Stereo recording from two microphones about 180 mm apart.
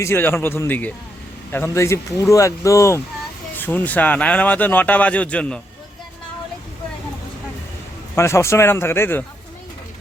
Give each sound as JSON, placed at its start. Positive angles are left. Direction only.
{"t": 0.0, "sound": "speech", "side_deg": 15}
{"t": 8.1, "sound": "speech", "side_deg": 15}